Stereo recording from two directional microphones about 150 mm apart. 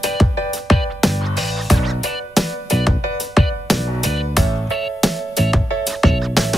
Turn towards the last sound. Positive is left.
turn(degrees=0)  # may be behind; listen again after turning